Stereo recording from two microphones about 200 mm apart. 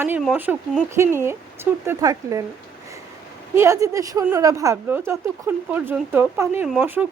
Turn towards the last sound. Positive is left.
turn(degrees=-5)  # may be behind; listen again after turning